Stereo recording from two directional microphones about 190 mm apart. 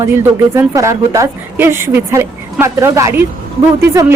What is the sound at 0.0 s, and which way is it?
Speech, 15° right (ahead or behind).